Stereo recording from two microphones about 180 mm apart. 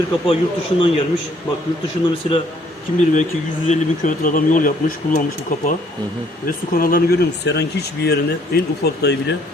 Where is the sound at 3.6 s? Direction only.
45° left (ahead or behind).